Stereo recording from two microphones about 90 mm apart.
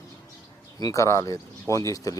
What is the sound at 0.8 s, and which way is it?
Speech, 45° left (ahead or behind).